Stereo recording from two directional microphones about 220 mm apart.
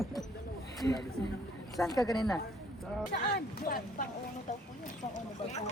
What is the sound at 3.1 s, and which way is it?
Speech, 45° left (ahead or behind).